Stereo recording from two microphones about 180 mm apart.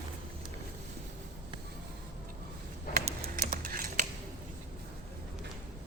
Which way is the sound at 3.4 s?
50° right (ahead or behind).